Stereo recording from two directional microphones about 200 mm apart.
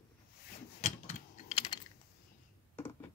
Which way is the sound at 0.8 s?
35° left (ahead or behind).